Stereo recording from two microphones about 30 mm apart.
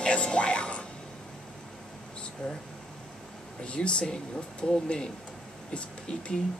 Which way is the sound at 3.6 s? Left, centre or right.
Left.